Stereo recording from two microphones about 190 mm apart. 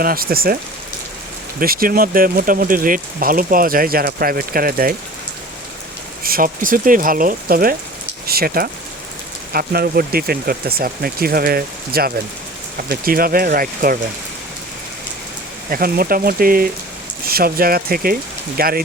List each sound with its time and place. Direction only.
0.0 s speech: 50° right (ahead or behind)
6.2 s speech: 50° right (ahead or behind)
15.7 s speech: 50° right (ahead or behind)